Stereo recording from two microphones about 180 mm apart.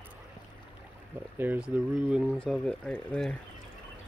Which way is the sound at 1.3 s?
10° right (ahead or behind).